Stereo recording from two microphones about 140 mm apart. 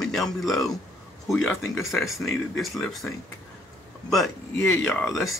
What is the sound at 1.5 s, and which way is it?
Speech, 15° left (ahead or behind).